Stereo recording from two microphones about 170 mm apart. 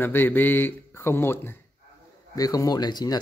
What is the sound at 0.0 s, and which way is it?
Speech, 10° left (ahead or behind).